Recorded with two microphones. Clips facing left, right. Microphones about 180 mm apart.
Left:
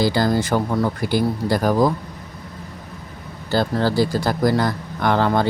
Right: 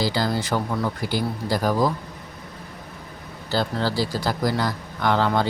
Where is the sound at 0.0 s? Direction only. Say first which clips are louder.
Left 5 dB; 50° left (ahead or behind).